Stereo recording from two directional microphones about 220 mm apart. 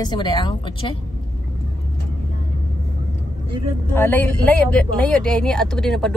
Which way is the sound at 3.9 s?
10° left (ahead or behind).